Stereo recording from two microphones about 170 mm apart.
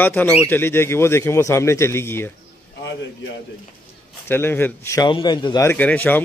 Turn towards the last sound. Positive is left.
turn(degrees=10)  # may be behind; listen again after turning